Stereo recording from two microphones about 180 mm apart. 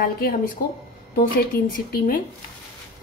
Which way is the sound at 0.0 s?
55° left (ahead or behind).